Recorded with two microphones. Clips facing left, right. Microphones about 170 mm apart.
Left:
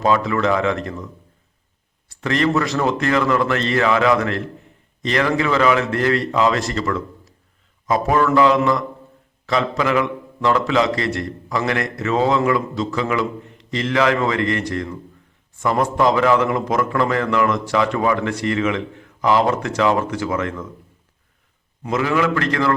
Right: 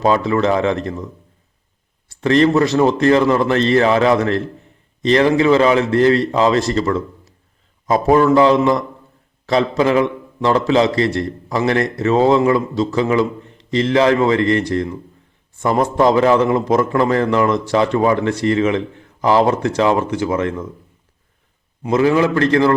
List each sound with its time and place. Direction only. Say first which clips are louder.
0.0 s a man's voice: right 3 dB; 30° right (ahead or behind)
2.0 s a man's voice: right 6 dB; 30° right (ahead or behind)
21.8 s a man's voice: right 5 dB; 30° right (ahead or behind)